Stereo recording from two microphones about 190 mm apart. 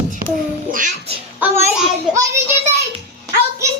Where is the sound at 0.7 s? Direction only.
45° right (ahead or behind).